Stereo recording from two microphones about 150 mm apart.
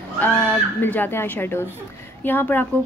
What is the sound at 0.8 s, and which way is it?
A woman's voice, 15° left (ahead or behind).